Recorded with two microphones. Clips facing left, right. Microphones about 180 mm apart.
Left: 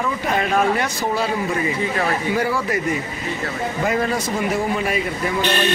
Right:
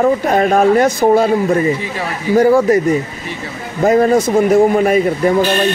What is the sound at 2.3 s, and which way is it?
Speech, 45° right (ahead or behind).